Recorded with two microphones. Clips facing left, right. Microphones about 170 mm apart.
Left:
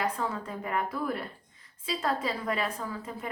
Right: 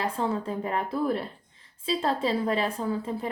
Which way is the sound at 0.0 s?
30° right (ahead or behind).